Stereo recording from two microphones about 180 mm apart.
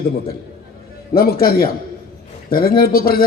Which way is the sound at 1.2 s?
55° left (ahead or behind).